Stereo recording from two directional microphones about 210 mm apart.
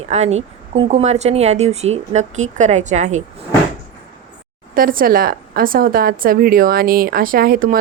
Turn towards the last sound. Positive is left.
turn(degrees=-45)  # may be behind; listen again after turning